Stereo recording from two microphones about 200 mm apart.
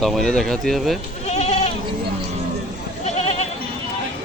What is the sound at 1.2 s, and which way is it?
Goat, 30° left (ahead or behind).